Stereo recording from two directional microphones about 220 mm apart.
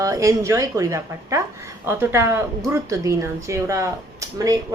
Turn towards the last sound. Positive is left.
turn(degrees=-15)  # may be behind; listen again after turning